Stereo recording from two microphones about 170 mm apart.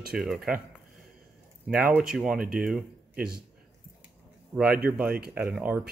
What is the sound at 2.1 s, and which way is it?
Speech, 5° right (ahead or behind).